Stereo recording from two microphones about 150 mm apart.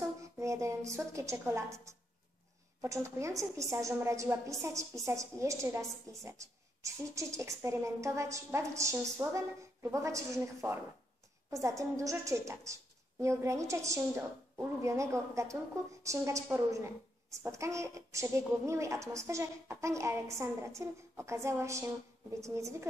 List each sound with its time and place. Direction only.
0.2 s a woman's voice: 20° right (ahead or behind)
2.8 s a woman's voice: 20° right (ahead or behind)